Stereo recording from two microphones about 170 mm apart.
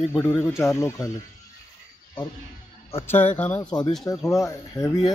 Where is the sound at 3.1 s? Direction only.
10° left (ahead or behind).